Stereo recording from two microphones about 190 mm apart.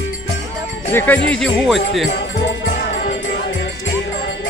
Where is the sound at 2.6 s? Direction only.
75° left (ahead or behind).